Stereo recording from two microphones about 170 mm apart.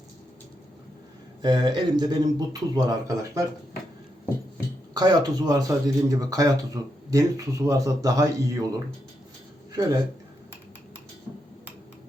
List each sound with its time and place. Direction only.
1.4 s a man's voice: 25° right (ahead or behind)
4.9 s a man's voice: 25° right (ahead or behind)
9.7 s a man's voice: 20° right (ahead or behind)